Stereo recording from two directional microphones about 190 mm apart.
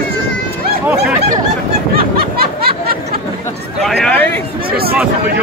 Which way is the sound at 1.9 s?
50° right (ahead or behind).